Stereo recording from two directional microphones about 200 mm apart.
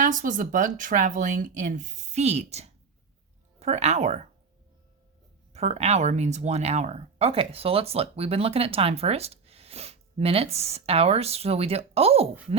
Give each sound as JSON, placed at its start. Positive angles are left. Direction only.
{"t": 0.0, "sound": "speech", "side_deg": -40}
{"t": 5.5, "sound": "speech", "side_deg": -30}